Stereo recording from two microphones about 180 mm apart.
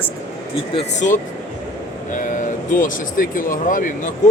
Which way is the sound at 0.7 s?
40° left (ahead or behind).